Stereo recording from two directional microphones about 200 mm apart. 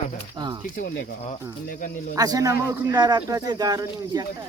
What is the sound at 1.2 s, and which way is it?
Speech, 40° left (ahead or behind).